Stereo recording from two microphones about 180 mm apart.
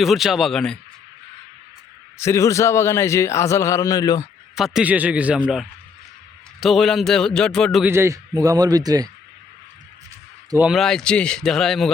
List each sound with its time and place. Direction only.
0.0 s a man's voice: centre (ahead or behind)
2.1 s a man's voice: 15° left (ahead or behind)
4.5 s a man's voice: 5° right (ahead or behind)
6.6 s a man's voice: centre (ahead or behind)
7.9 s a man's voice: 15° right (ahead or behind)
10.6 s a man's voice: centre (ahead or behind)